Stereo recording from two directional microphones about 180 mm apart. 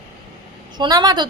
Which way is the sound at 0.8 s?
20° right (ahead or behind).